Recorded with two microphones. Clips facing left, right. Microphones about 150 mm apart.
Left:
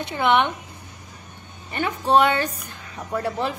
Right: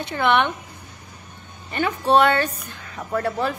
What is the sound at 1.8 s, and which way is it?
A woman's voice, 15° left (ahead or behind).